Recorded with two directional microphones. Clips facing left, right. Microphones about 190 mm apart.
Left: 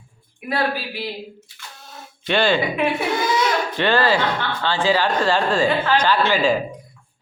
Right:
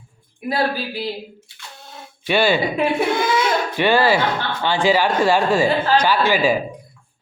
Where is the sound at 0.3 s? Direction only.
30° right (ahead or behind).